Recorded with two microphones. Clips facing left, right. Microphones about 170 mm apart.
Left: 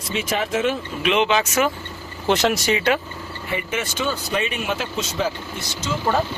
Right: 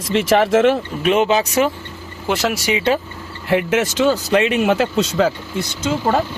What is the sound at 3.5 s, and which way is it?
Speech, 85° right.